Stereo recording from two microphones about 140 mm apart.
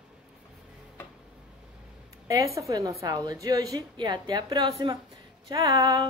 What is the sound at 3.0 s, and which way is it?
A woman's voice, 25° right (ahead or behind).